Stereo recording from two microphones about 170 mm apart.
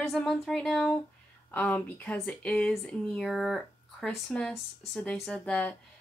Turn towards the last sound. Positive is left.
turn(degrees=10)  # may be behind; listen again after turning